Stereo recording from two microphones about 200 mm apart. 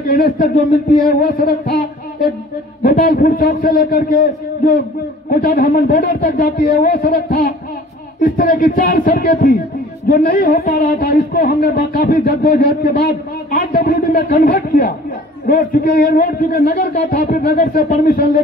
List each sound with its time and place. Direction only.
0.1 s a man's voice: 45° left (ahead or behind)
2.8 s a man's voice: 50° left (ahead or behind)